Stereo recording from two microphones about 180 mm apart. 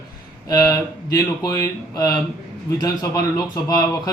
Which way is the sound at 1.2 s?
20° left (ahead or behind).